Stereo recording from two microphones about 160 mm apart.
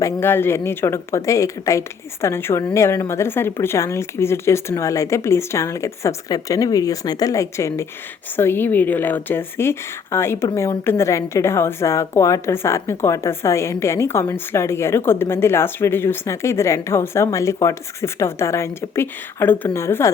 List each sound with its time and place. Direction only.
0.0 s speech: 15° left (ahead or behind)